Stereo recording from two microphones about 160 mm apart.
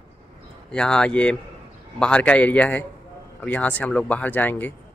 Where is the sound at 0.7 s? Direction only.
5° left (ahead or behind).